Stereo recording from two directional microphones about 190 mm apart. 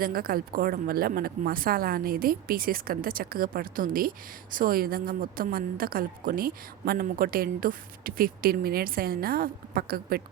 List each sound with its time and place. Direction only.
0.0 s a woman's voice: 50° right (ahead or behind)